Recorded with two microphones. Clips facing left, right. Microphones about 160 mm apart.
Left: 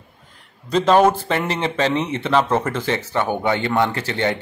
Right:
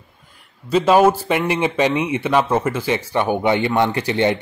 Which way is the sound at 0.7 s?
10° right (ahead or behind).